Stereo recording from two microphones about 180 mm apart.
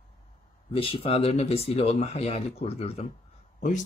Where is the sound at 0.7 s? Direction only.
30° left (ahead or behind).